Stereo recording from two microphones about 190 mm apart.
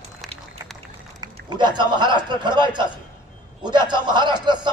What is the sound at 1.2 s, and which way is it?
A man's voice, 25° right (ahead or behind).